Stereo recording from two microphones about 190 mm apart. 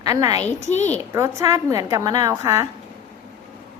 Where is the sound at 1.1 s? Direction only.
15° right (ahead or behind).